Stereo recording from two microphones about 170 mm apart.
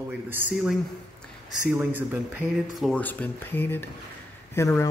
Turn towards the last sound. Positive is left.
turn(degrees=15)  # may be behind; listen again after turning